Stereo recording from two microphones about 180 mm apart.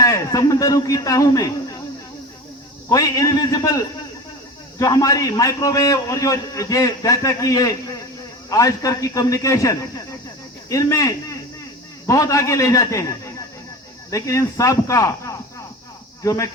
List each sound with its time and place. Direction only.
0.0 s speech: 20° left (ahead or behind)
2.9 s a man's voice: 20° left (ahead or behind)